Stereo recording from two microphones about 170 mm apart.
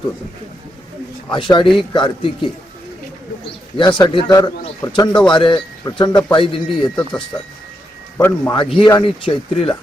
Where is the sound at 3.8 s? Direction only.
25° left (ahead or behind).